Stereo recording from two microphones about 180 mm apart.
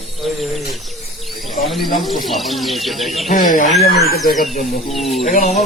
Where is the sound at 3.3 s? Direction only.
50° left (ahead or behind).